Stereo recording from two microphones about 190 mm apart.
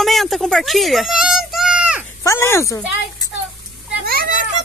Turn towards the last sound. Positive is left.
turn(degrees=-50)  # may be behind; listen again after turning